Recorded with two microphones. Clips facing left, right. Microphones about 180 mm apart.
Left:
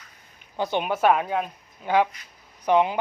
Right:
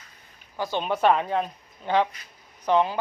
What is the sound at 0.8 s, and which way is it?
Speech, 5° left (ahead or behind).